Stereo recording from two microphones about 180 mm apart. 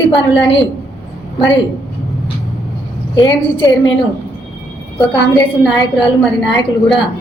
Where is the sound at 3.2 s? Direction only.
25° left (ahead or behind).